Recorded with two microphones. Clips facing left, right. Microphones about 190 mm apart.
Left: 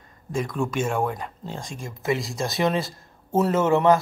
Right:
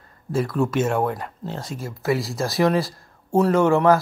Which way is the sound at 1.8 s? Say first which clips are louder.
Right 2 dB; 15° left (ahead or behind).